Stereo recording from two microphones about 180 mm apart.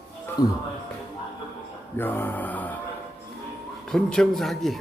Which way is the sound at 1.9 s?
10° left (ahead or behind).